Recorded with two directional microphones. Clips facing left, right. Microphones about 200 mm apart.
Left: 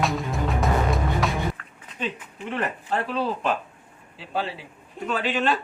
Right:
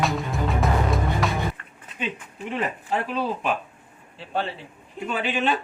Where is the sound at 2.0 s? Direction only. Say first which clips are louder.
Even; 15° right (ahead or behind).